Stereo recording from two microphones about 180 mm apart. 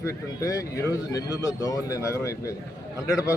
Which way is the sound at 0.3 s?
15° left (ahead or behind).